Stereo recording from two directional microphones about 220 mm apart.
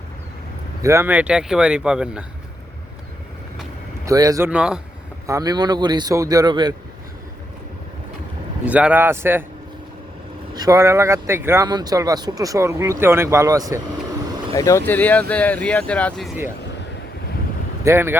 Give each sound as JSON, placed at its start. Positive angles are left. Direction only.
{"t": 0.8, "sound": "speech", "side_deg": -15}
{"t": 4.0, "sound": "speech", "side_deg": -15}
{"t": 5.2, "sound": "speech", "side_deg": -15}
{"t": 8.6, "sound": "speech", "side_deg": -5}
{"t": 10.5, "sound": "speech", "side_deg": -15}
{"t": 14.5, "sound": "a man's voice", "side_deg": 15}
{"t": 17.8, "sound": "speech", "side_deg": -10}